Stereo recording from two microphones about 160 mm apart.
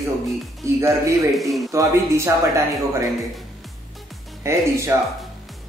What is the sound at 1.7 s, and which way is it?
Speech, 20° right (ahead or behind).